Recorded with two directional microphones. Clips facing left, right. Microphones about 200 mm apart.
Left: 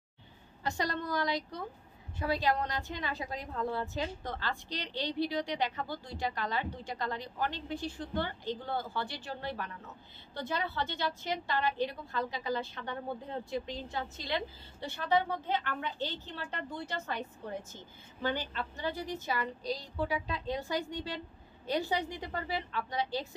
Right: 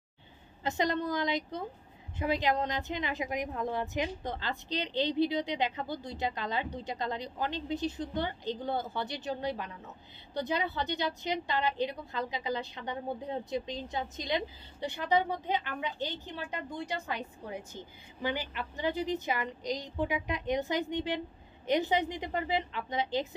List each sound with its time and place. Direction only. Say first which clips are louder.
0.7 s a woman's voice: right 4 dB; 20° right (ahead or behind)